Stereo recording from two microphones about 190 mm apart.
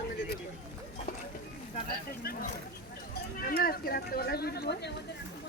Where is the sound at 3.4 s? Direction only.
50° left (ahead or behind).